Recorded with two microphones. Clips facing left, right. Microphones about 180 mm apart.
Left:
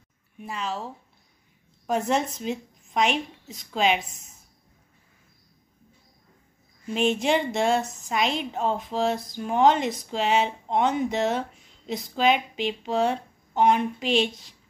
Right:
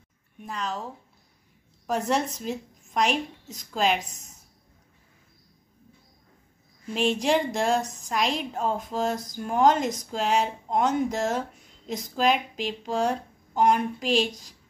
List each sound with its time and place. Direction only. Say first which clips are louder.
0.4 s speech: left 1 dB; 5° left (ahead or behind)
1.9 s speech: left 1 dB; centre (ahead or behind)
4.0 s a woman's voice: right 1 dB; 40° right (ahead or behind)
6.9 s speech: left 1 dB; centre (ahead or behind)